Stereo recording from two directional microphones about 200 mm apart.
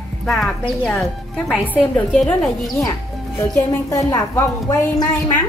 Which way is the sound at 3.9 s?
15° left (ahead or behind).